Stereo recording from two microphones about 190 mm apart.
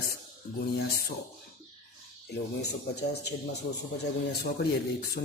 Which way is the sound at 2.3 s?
60° left (ahead or behind).